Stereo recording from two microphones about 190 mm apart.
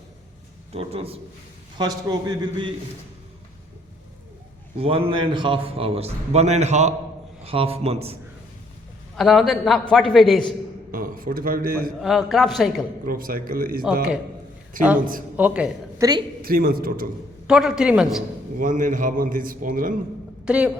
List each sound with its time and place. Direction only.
0.7 s a man's voice: 30° right (ahead or behind)
4.8 s a man's voice: 30° right (ahead or behind)
9.1 s a man's voice: centre (ahead or behind)
10.9 s a man's voice: 45° right (ahead or behind)
11.9 s a man's voice: centre (ahead or behind)
13.1 s a man's voice: 50° right (ahead or behind)
15.4 s speech: 5° right (ahead or behind)
16.0 s a woman's voice: 20° right (ahead or behind)
16.4 s a man's voice: 50° right (ahead or behind)
17.4 s a man's voice: 5° right (ahead or behind)
18.6 s a man's voice: 45° right (ahead or behind)
20.4 s a man's voice: 5° right (ahead or behind)